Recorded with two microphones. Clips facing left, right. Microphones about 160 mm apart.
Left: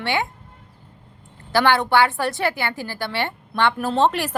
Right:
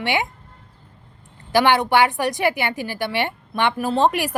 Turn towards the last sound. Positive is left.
turn(degrees=-15)  # may be behind; listen again after turning